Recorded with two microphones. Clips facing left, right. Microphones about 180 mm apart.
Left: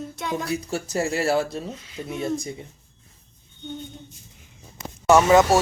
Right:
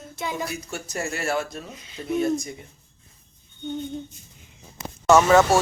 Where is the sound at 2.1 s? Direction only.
25° left (ahead or behind).